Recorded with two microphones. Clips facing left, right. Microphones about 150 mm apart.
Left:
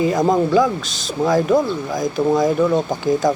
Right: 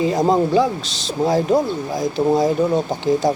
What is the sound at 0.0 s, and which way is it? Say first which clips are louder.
Speech: even; 30° right (ahead or behind).